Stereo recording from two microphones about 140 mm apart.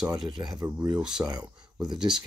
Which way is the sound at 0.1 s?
30° right (ahead or behind).